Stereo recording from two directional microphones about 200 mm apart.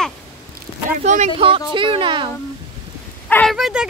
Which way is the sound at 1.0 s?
35° right (ahead or behind).